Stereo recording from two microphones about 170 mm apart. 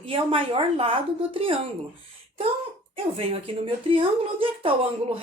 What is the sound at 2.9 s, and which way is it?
Speech, 35° right (ahead or behind).